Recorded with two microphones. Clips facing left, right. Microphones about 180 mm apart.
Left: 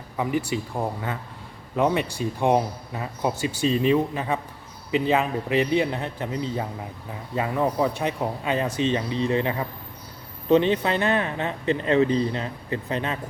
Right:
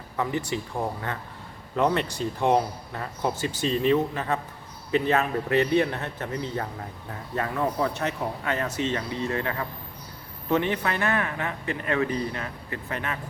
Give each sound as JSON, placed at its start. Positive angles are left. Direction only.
{"t": 0.2, "sound": "speech", "side_deg": 10}
{"t": 1.7, "sound": "speech", "side_deg": 10}